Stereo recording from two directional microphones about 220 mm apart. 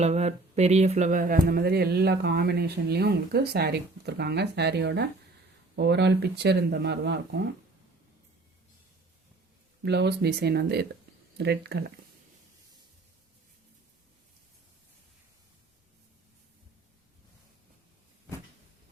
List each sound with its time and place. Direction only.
0.0 s speech: 30° right (ahead or behind); by 7.2 s 50° right (ahead or behind)
9.8 s speech: 50° right (ahead or behind)